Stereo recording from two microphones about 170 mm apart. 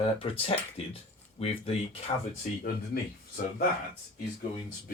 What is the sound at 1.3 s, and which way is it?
Speech, 35° left (ahead or behind).